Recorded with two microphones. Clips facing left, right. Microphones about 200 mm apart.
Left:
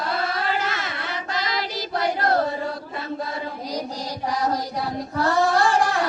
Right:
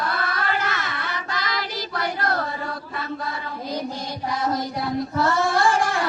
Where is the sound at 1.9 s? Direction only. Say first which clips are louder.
Left 5 dB; 30° left (ahead or behind).